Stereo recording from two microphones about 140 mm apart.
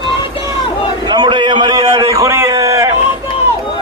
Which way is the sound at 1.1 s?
30° right (ahead or behind).